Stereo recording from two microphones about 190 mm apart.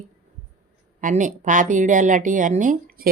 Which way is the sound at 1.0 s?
40° right (ahead or behind).